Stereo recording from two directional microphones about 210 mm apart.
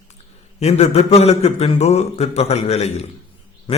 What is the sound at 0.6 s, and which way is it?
A man's voice, 30° left (ahead or behind).